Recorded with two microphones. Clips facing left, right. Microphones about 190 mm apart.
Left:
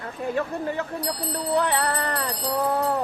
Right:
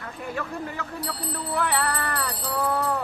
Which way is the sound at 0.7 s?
20° left (ahead or behind).